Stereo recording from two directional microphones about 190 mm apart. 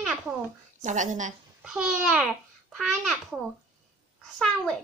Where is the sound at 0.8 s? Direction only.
40° right (ahead or behind).